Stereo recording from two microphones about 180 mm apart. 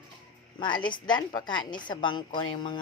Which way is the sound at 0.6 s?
25° left (ahead or behind).